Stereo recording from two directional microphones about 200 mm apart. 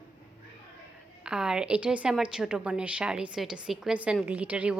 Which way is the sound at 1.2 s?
5° right (ahead or behind).